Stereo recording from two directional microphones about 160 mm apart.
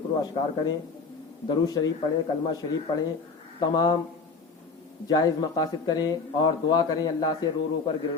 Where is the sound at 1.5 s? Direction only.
25° left (ahead or behind).